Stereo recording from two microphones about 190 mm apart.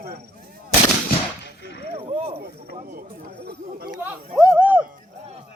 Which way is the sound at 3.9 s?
5° right (ahead or behind).